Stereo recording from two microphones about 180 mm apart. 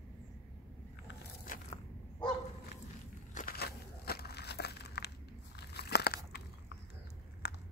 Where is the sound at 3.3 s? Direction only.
55° left (ahead or behind).